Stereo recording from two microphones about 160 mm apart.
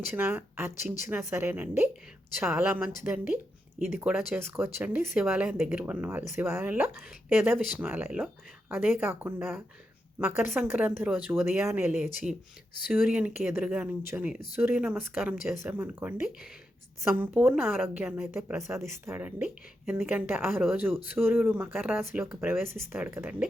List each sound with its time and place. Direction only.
0.1 s speech: 15° right (ahead or behind)